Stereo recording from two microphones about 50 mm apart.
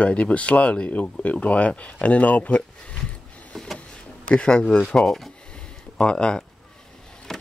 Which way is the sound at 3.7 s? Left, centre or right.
Left.